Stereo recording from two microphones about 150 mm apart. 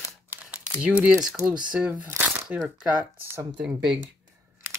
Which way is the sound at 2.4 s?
Centre (ahead or behind).